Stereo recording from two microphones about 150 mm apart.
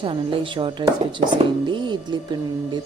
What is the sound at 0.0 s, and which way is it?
Speech, 35° right (ahead or behind).